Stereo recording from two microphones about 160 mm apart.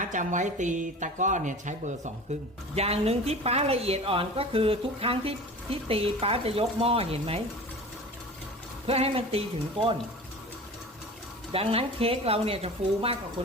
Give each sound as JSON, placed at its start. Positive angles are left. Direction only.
{"t": 0.0, "sound": "speech", "side_deg": -55}
{"t": 2.7, "sound": "a woman's voice", "side_deg": -40}
{"t": 8.9, "sound": "a woman's voice", "side_deg": -35}
{"t": 11.5, "sound": "a woman's voice", "side_deg": -35}